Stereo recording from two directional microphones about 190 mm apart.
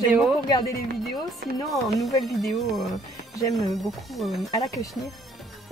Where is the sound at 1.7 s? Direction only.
Centre (ahead or behind).